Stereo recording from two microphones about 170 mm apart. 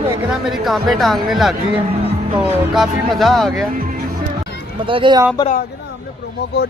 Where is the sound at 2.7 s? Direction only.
Centre (ahead or behind).